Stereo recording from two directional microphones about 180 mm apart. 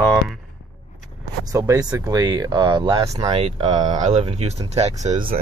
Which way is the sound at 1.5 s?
20° right (ahead or behind).